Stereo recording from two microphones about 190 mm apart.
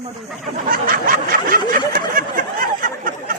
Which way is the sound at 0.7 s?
50° right (ahead or behind).